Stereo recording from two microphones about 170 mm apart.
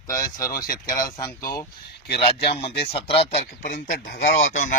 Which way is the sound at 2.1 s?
65° left (ahead or behind).